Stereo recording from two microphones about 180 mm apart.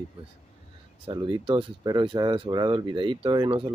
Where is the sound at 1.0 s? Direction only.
25° right (ahead or behind).